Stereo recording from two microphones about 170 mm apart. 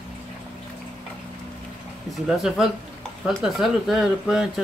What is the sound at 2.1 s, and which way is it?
Speech, centre (ahead or behind).